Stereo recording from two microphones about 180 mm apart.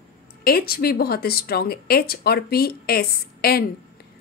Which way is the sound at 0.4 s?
55° left (ahead or behind).